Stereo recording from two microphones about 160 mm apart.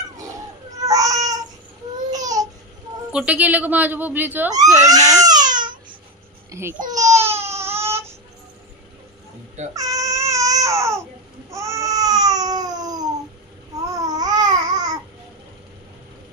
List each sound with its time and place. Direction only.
0.7 s babbling: 20° right (ahead or behind)
3.1 s a woman's voice: 5° right (ahead or behind)
4.8 s baby cry: 20° right (ahead or behind)
6.5 s speech: 15° right (ahead or behind)
6.9 s baby cry: 20° right (ahead or behind)
9.8 s baby cry: 20° right (ahead or behind)
11.5 s babbling: 20° right (ahead or behind)